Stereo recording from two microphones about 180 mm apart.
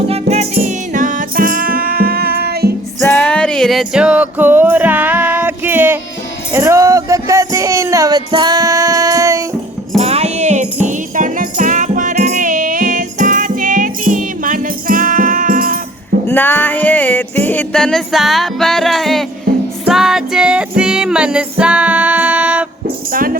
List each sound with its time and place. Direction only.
0.1 s music: 35° right (ahead or behind); by 2.7 s 60° right (ahead or behind)
3.1 s music: 10° left (ahead or behind); by 6.0 s 10° right (ahead or behind)
6.5 s a sound: 15° right (ahead or behind)
10.0 s music: 35° right (ahead or behind)
16.2 s music: 10° left (ahead or behind); by 22.6 s 5° right (ahead or behind)
23.1 s speech: 50° right (ahead or behind)